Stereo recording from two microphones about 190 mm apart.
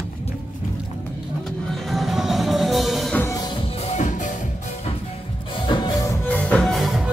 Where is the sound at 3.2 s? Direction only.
20° left (ahead or behind); by 4.5 s 40° left (ahead or behind).